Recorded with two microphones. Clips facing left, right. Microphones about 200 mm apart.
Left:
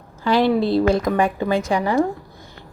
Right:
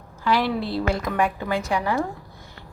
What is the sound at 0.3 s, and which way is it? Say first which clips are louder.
Speech: left 6 dB; 20° left (ahead or behind).